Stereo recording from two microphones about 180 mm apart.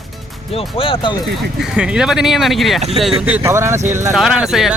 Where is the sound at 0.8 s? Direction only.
30° left (ahead or behind).